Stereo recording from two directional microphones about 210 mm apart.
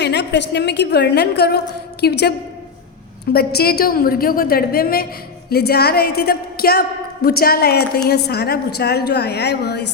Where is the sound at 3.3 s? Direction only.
45° left (ahead or behind).